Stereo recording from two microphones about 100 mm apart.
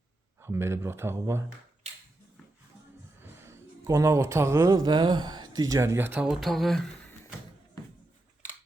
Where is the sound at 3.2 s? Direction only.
20° right (ahead or behind).